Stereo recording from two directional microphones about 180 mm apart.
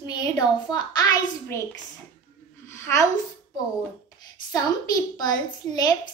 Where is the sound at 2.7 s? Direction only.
15° left (ahead or behind).